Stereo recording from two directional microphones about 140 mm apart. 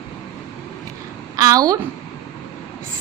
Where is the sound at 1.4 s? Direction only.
25° right (ahead or behind).